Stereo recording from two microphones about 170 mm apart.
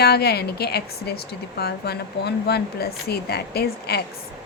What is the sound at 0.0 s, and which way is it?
A woman's voice, 70° left (ahead or behind).